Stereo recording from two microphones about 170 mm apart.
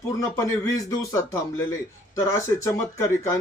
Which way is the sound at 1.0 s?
15° left (ahead or behind).